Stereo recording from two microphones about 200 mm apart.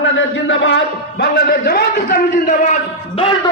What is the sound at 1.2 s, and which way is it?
A man's voice, 50° left (ahead or behind).